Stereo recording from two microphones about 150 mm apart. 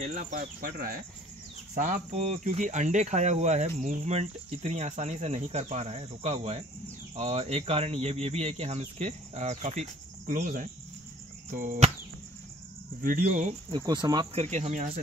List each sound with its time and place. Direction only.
0.0 s speech: 55° right (ahead or behind); by 1.0 s 75° right (ahead or behind)
1.8 s speech: 55° right (ahead or behind)
13.0 s speech: 65° right (ahead or behind)
13.7 s speech: 30° right (ahead or behind)
14.3 s speech: 45° right (ahead or behind)